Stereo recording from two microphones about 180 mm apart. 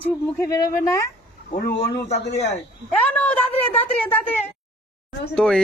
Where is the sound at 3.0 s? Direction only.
5° left (ahead or behind).